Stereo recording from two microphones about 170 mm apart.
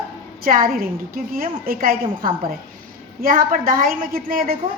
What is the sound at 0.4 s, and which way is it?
A woman's voice, 60° right (ahead or behind).